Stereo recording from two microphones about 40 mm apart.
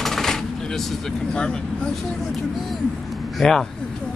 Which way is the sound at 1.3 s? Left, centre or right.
Left.